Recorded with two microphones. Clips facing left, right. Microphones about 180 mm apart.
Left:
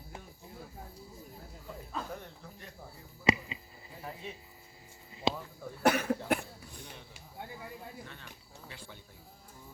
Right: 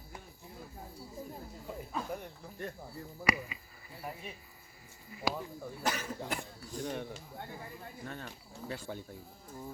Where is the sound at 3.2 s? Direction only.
25° left (ahead or behind).